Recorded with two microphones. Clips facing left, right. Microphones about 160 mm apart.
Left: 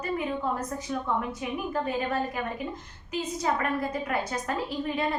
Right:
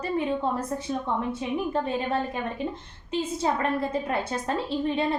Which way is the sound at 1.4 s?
25° right (ahead or behind).